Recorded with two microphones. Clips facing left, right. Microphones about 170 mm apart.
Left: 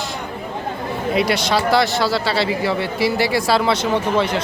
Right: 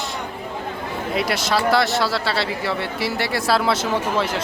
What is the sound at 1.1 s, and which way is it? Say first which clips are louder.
Speech: left 3 dB; centre (ahead or behind).